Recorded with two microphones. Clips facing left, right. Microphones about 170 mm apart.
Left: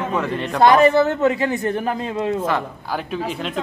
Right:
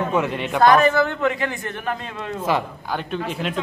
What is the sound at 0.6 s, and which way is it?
A woman's voice, 25° left (ahead or behind).